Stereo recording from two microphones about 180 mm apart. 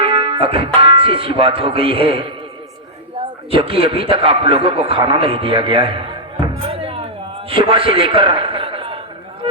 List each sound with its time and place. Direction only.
0.0 s speech: 30° right (ahead or behind)
3.5 s a man's voice: 30° right (ahead or behind)
6.4 s music: 30° right (ahead or behind)
7.5 s a man's voice: 30° right (ahead or behind)